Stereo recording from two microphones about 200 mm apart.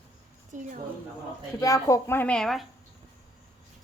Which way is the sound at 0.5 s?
40° right (ahead or behind).